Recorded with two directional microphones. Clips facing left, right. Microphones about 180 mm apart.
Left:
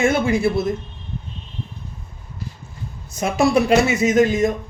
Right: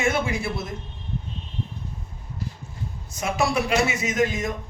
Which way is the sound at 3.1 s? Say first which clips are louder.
Left 7 dB; 30° left (ahead or behind).